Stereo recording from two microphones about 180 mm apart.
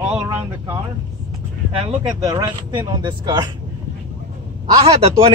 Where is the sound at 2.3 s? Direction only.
25° right (ahead or behind).